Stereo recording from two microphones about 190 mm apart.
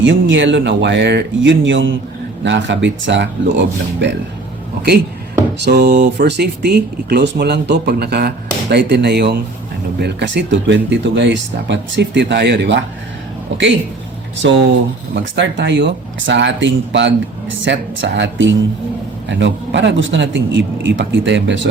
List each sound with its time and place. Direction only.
0.0 s speech: 75° right (ahead or behind)
5.5 s speech: 65° right (ahead or behind)
15.1 s speech: 70° right (ahead or behind)